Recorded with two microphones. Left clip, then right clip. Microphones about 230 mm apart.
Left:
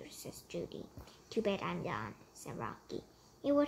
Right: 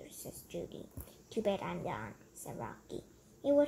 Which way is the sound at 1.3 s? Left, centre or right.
Left.